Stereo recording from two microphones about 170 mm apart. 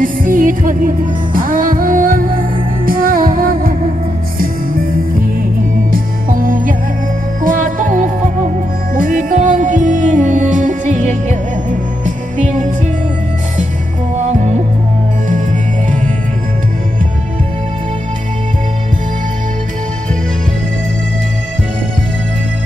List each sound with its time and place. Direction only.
0.0 s music: 55° right (ahead or behind)
5.9 s music: 55° right (ahead or behind)